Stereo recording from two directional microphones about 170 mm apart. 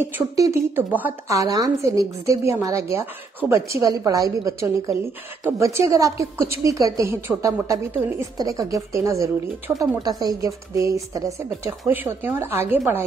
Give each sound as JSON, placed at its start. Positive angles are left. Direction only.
{"t": 0.0, "sound": "a woman's voice", "side_deg": -15}